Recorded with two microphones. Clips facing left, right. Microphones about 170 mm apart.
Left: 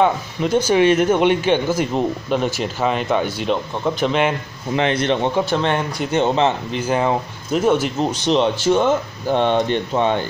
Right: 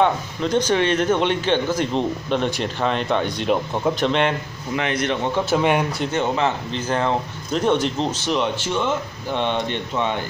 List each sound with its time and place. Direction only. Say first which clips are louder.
0.0 s speech: left 2 dB; 10° left (ahead or behind)
4.7 s a man's voice: left 4 dB; 30° left (ahead or behind)
5.4 s speech: even; 5° right (ahead or behind)
6.1 s a man's voice: left 5 dB; 25° left (ahead or behind)
6.7 s speech: left 3 dB; 10° left (ahead or behind)
8.5 s speech: left 7 dB; 40° left (ahead or behind)